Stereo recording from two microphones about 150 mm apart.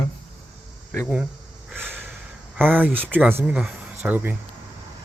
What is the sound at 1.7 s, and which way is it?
Snort, 15° right (ahead or behind).